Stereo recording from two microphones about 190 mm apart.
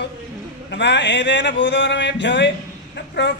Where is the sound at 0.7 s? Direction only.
70° left (ahead or behind).